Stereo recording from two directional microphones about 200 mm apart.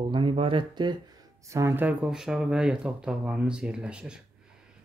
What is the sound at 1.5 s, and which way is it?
Speech, 15° right (ahead or behind).